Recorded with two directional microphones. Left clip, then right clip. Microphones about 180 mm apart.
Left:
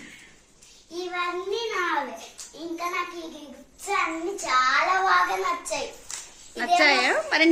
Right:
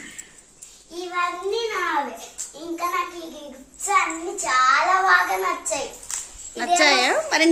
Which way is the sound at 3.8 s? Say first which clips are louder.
Right 5 dB; centre (ahead or behind).